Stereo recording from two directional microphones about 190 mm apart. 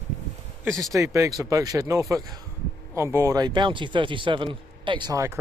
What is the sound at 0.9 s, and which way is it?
A man's voice, 15° right (ahead or behind).